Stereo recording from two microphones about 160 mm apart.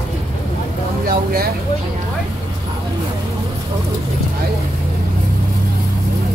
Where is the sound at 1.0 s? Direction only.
70° right (ahead or behind).